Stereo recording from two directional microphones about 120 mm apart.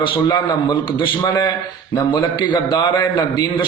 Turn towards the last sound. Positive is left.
turn(degrees=40)  # may be behind; listen again after turning